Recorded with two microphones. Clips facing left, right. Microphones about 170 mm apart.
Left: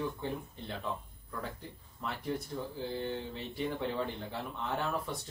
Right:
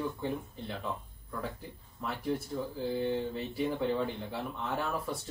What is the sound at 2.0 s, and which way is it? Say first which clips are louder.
Speech: right 3 dB; centre (ahead or behind).